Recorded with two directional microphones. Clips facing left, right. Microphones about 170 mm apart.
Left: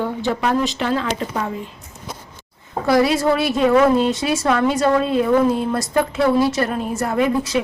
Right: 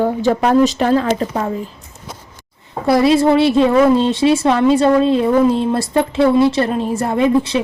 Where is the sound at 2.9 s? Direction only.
25° right (ahead or behind).